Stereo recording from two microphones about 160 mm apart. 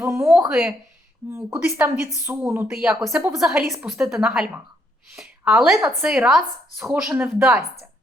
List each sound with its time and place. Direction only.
0.0 s speech: 15° right (ahead or behind)
2.7 s speech: centre (ahead or behind)